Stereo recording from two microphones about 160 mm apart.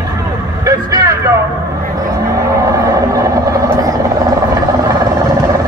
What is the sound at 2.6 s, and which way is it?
Vehicle, 20° right (ahead or behind).